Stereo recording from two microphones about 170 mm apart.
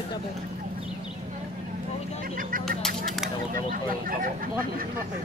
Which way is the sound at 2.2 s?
55° right (ahead or behind).